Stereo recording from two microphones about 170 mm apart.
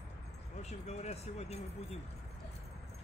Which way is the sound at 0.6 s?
40° left (ahead or behind).